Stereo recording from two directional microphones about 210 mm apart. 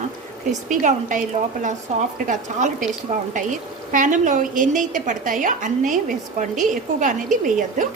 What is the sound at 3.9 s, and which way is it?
Speech, 40° right (ahead or behind).